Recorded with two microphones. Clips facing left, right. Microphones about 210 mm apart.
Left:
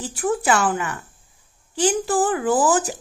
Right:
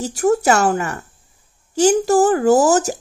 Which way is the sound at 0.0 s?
40° right (ahead or behind).